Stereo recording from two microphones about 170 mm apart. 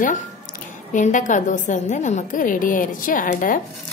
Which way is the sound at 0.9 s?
50° left (ahead or behind).